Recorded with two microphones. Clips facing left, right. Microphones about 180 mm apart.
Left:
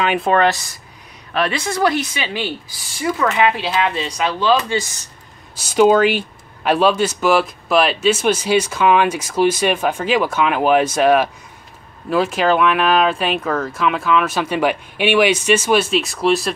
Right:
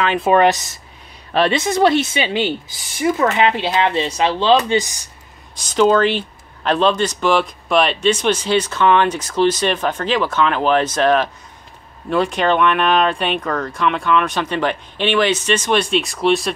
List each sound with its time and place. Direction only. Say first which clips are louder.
0.2 s speech: right 2 dB; 15° right (ahead or behind)
5.6 s speech: left 2 dB; 10° left (ahead or behind)